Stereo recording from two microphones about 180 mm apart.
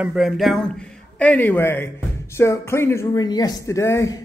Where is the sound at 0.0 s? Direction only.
5° right (ahead or behind).